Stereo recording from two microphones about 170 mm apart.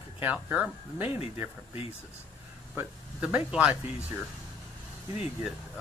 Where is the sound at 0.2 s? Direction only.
10° right (ahead or behind).